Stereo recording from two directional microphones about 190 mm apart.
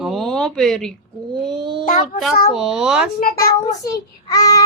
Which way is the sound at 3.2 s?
50° left (ahead or behind).